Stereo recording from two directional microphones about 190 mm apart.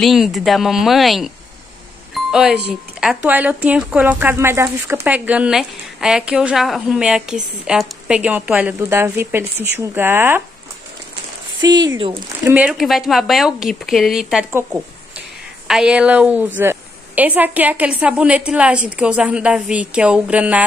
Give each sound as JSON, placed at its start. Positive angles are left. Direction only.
{"t": 0.0, "sound": "speech", "side_deg": 0}
{"t": 2.3, "sound": "speech", "side_deg": -5}
{"t": 11.6, "sound": "speech", "side_deg": -20}
{"t": 12.4, "sound": "speech", "side_deg": -5}